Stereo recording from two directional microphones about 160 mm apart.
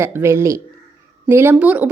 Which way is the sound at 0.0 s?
15° right (ahead or behind).